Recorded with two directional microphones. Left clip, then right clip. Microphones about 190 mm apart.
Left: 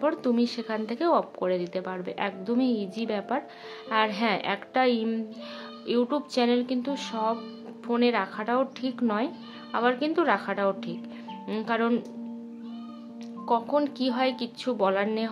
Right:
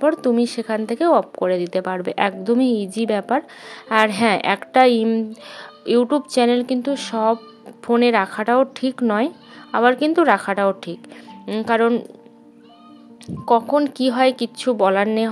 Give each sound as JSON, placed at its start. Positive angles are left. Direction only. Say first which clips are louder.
{"t": 0.0, "sound": "speech", "louder": "right 8 dB", "side_deg": -30}
{"t": 13.5, "sound": "speech", "louder": "right 9 dB", "side_deg": -35}